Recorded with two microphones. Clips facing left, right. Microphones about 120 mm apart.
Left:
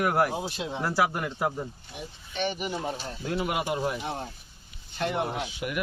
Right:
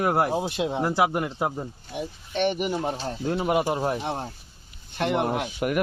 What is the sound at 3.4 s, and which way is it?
Speech, 30° right (ahead or behind).